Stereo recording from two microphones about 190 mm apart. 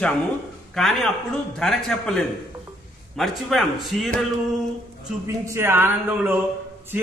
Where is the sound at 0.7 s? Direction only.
Centre (ahead or behind).